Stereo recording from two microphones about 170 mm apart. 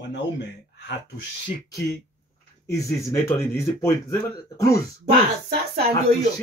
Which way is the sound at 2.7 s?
20° left (ahead or behind).